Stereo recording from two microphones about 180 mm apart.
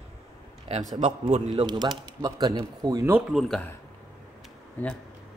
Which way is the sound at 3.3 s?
Centre (ahead or behind).